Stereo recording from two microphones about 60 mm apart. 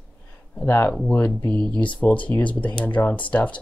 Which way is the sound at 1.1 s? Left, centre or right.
Left.